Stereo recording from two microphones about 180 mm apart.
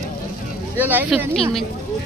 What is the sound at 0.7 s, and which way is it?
Speech, 10° right (ahead or behind).